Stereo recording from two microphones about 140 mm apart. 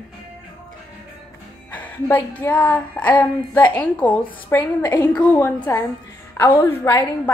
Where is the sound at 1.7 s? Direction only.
10° left (ahead or behind).